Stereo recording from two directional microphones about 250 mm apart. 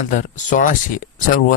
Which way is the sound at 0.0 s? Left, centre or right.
Left.